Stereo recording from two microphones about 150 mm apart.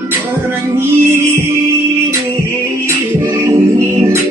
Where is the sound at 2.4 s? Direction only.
20° right (ahead or behind).